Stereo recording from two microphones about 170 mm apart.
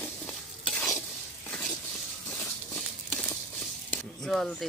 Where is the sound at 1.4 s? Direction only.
5° left (ahead or behind).